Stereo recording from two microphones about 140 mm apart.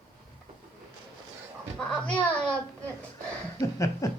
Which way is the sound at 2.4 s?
10° left (ahead or behind).